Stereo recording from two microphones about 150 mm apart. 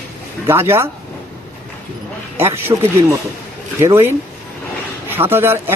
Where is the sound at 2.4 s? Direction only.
15° right (ahead or behind).